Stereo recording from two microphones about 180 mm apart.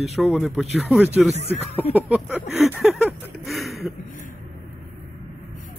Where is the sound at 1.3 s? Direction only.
35° left (ahead or behind).